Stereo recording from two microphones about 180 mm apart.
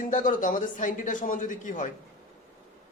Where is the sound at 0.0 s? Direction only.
45° left (ahead or behind).